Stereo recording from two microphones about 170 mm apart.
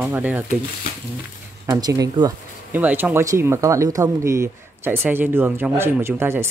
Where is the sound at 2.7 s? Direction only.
10° right (ahead or behind).